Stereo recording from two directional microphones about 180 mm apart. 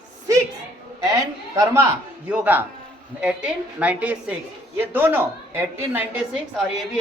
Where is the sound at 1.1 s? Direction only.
20° right (ahead or behind).